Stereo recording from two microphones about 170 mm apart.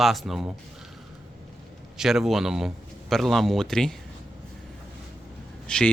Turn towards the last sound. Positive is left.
turn(degrees=5)  # may be behind; listen again after turning